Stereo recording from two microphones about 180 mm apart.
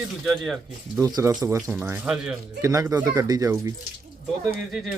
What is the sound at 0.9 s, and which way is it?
Speech, 15° right (ahead or behind).